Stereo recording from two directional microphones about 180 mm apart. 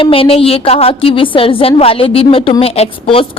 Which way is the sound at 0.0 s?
30° left (ahead or behind).